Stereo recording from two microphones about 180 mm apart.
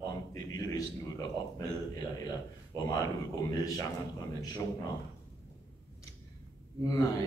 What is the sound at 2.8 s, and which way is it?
Speech, 20° left (ahead or behind).